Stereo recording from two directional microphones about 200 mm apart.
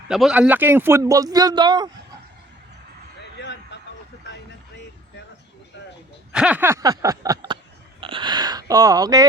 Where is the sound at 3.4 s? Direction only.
60° left (ahead or behind).